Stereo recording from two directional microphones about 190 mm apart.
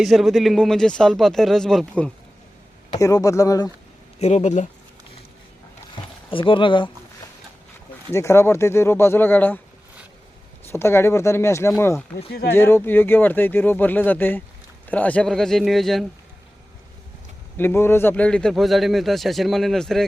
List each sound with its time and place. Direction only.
0.0 s a man's voice: centre (ahead or behind)
3.0 s speech: 15° left (ahead or behind)
4.2 s speech: 35° left (ahead or behind)
6.3 s speech: 25° left (ahead or behind)
8.1 s speech: 15° left (ahead or behind)
10.7 s a man's voice: 15° left (ahead or behind)
17.6 s a man's voice: 10° left (ahead or behind)